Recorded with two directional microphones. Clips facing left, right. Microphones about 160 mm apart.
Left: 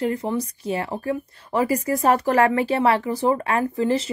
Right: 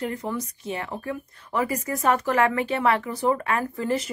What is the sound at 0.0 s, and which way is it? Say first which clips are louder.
A woman's voice: left 5 dB; 30° left (ahead or behind).